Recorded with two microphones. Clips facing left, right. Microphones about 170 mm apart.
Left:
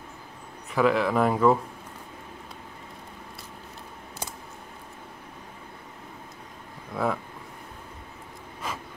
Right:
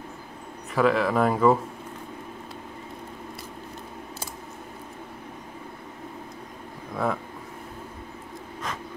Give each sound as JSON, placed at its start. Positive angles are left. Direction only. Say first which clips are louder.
{"t": 0.7, "sound": "speech", "louder": "right 1 dB", "side_deg": 0}
{"t": 7.0, "sound": "speech", "louder": "even", "side_deg": 0}